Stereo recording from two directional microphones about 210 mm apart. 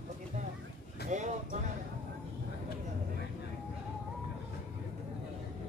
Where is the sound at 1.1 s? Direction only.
35° right (ahead or behind).